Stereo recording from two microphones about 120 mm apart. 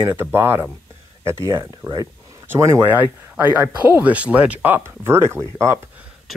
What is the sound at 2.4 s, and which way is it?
Speech, 20° right (ahead or behind).